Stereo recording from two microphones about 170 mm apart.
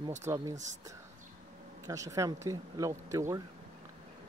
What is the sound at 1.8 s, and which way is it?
A man's voice, 20° right (ahead or behind).